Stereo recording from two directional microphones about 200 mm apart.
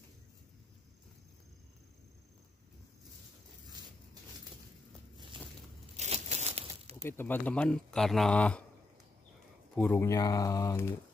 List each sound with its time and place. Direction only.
5.1 s a sound: 25° right (ahead or behind)
7.0 s speech: 10° left (ahead or behind)
9.8 s speech: 10° left (ahead or behind)